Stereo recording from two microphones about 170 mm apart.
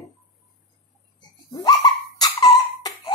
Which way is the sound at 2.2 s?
25° left (ahead or behind).